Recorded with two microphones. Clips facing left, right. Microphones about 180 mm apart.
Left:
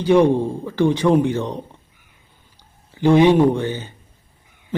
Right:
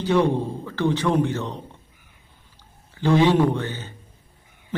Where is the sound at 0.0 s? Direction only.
15° left (ahead or behind).